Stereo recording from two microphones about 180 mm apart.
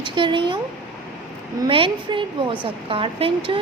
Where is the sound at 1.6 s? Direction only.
30° right (ahead or behind).